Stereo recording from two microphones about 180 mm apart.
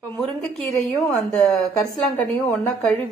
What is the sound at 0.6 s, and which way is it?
A woman's voice, centre (ahead or behind).